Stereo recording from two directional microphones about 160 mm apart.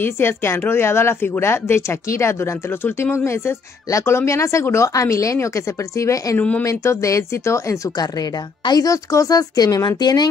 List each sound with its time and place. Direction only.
0.0 s a woman's voice: 15° left (ahead or behind)